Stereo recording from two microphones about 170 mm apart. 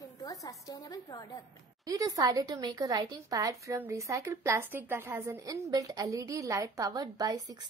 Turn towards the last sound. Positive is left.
turn(degrees=-25)  # may be behind; listen again after turning